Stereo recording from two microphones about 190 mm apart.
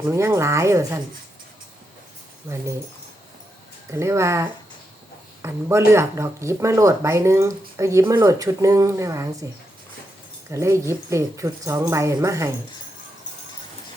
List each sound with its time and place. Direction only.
0.0 s speech: 10° right (ahead or behind)
3.9 s speech: 15° right (ahead or behind)
10.5 s speech: 15° right (ahead or behind)